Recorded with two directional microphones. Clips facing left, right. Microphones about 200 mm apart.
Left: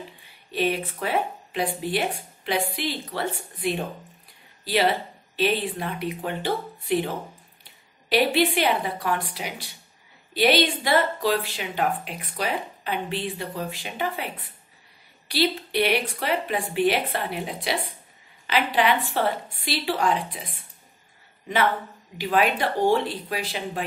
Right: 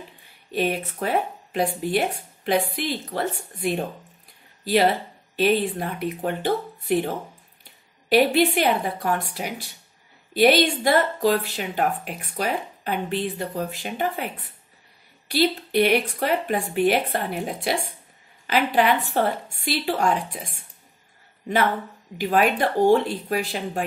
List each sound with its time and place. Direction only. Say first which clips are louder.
0.5 s speech: right 1 dB; 45° right (ahead or behind)
5.3 s speech: right 4 dB; 50° right (ahead or behind)
8.1 s speech: right 3 dB; 45° right (ahead or behind)
15.2 s speech: right 3 dB; 45° right (ahead or behind)
22.2 s speech: right 2 dB; 45° right (ahead or behind)